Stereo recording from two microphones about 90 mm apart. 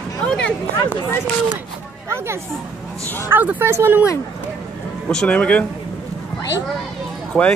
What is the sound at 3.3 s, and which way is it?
Speech, 20° right (ahead or behind).